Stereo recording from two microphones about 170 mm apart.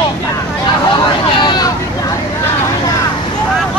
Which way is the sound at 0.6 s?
30° left (ahead or behind).